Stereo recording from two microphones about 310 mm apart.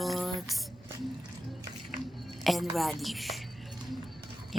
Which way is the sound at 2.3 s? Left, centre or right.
Centre.